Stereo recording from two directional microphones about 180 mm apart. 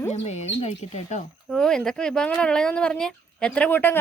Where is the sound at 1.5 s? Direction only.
5° left (ahead or behind).